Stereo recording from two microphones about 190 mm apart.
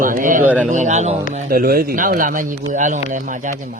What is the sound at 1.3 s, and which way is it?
Speech, 50° right (ahead or behind).